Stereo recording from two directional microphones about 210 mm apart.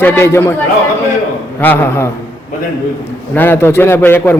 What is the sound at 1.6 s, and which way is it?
Speech, 10° left (ahead or behind).